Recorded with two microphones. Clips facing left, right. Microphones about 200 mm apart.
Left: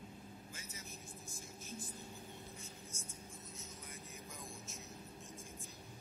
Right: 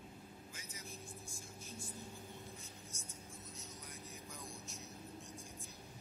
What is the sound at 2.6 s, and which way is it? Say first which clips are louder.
Whispering: left 2 dB; centre (ahead or behind).